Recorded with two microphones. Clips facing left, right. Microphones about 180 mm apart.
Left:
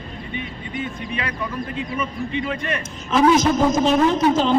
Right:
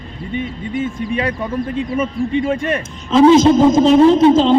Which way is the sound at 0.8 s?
45° right (ahead or behind).